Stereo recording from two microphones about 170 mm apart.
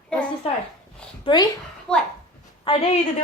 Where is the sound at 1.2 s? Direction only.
25° left (ahead or behind).